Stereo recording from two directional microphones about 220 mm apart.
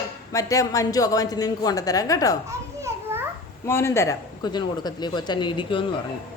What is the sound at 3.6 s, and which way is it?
Speech, 10° left (ahead or behind).